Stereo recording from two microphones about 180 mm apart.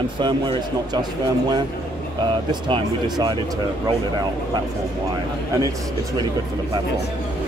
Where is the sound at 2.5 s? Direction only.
25° right (ahead or behind).